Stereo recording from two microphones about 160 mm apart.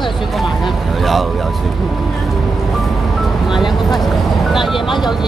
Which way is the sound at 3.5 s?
Centre (ahead or behind).